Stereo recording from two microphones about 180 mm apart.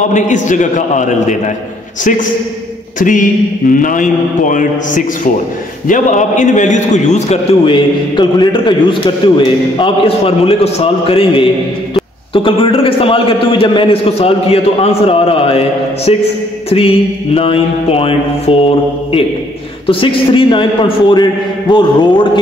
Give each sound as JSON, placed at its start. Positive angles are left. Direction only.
{"t": 0.1, "sound": "a man's voice", "side_deg": 45}
{"t": 3.0, "sound": "a man's voice", "side_deg": 45}
{"t": 19.9, "sound": "a man's voice", "side_deg": 30}